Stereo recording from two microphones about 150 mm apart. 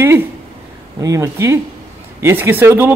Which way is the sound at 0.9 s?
20° right (ahead or behind).